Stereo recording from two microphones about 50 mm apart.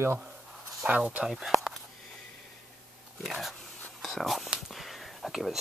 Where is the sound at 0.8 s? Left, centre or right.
Right.